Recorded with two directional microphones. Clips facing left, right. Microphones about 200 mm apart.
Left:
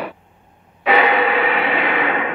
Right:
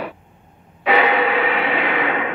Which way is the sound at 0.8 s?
60° left (ahead or behind).